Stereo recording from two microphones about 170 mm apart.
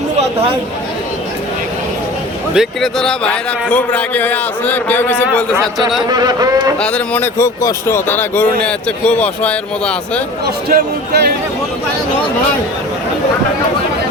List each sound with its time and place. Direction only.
2.6 s speech: 5° left (ahead or behind)
6.1 s a man's voice: 25° right (ahead or behind)
6.7 s speech: 5° left (ahead or behind)
10.7 s speech: 70° right (ahead or behind)